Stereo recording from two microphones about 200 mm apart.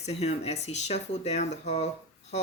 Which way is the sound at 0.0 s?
35° left (ahead or behind).